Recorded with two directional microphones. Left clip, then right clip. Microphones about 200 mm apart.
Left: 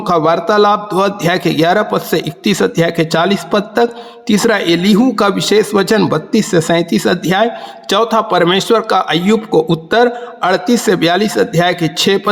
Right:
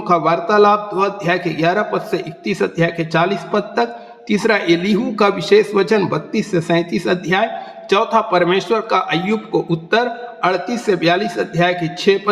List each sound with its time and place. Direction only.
0.0 s speech: 45° left (ahead or behind)